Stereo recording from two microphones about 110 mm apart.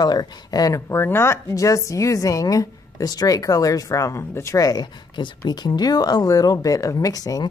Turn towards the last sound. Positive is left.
turn(degrees=35)  # may be behind; listen again after turning